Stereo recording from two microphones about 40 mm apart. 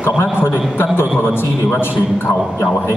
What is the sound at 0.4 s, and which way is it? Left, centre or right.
A man's voice, left.